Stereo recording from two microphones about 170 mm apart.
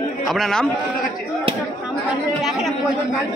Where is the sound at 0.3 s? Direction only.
Centre (ahead or behind).